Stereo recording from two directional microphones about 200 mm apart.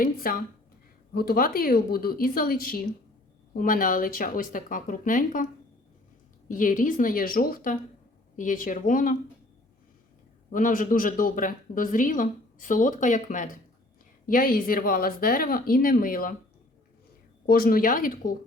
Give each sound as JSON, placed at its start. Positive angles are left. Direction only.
{"t": 0.0, "sound": "speech", "side_deg": 45}
{"t": 6.5, "sound": "a woman's voice", "side_deg": 40}
{"t": 10.5, "sound": "a woman's voice", "side_deg": 40}
{"t": 17.4, "sound": "speech", "side_deg": 50}